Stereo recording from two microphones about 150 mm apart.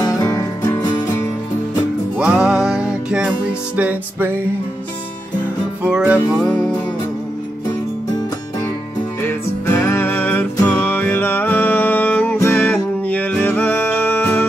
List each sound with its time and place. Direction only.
0.0 s music: 25° left (ahead or behind)
2.1 s music: 5° right (ahead or behind)
5.9 s music: 5° right (ahead or behind)
6.3 s music: 5° left (ahead or behind)
9.2 s music: 15° left (ahead or behind)